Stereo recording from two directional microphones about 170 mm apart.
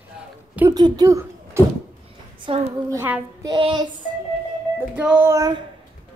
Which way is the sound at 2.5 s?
30° right (ahead or behind).